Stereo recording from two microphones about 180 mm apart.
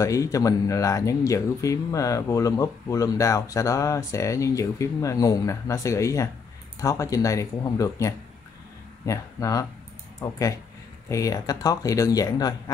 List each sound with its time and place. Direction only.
0.0 s speech: 20° left (ahead or behind)